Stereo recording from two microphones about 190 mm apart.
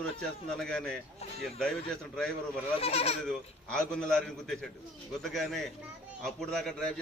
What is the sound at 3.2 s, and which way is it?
A man's voice, 5° left (ahead or behind).